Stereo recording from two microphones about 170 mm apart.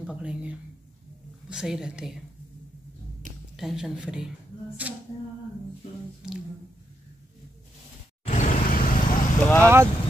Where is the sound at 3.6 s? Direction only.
5° right (ahead or behind).